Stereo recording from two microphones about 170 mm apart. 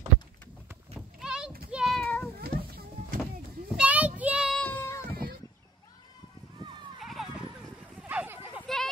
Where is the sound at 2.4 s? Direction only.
65° right (ahead or behind).